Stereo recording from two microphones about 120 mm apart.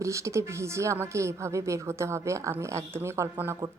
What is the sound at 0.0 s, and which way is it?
Speech, 25° right (ahead or behind).